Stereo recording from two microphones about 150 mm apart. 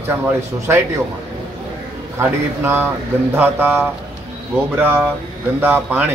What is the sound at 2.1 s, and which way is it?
A man's voice, 15° right (ahead or behind).